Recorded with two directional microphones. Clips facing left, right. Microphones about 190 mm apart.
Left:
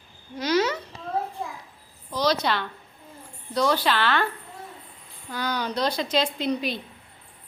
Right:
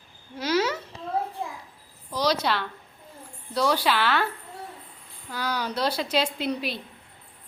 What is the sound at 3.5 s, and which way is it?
Speech, 10° right (ahead or behind).